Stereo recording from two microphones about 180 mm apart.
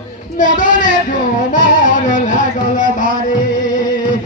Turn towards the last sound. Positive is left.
turn(degrees=45)  # may be behind; listen again after turning